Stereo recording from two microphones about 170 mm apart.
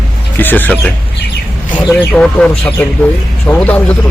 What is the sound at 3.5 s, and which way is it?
Speech, 10° left (ahead or behind).